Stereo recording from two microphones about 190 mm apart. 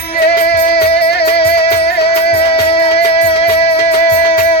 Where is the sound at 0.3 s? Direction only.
30° left (ahead or behind).